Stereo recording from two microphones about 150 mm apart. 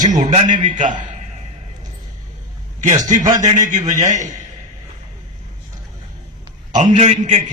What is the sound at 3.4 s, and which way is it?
Speech, 55° right (ahead or behind).